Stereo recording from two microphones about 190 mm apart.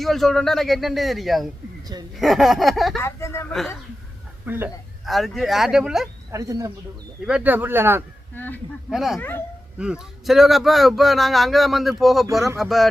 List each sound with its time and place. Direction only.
0.0 s speech: centre (ahead or behind)
3.0 s speech: 15° left (ahead or behind)
4.4 s speech: 10° right (ahead or behind)
5.0 s speech: centre (ahead or behind)
6.3 s speech: 15° right (ahead or behind)
8.4 s speech: 10° left (ahead or behind)
8.9 s speech: centre (ahead or behind)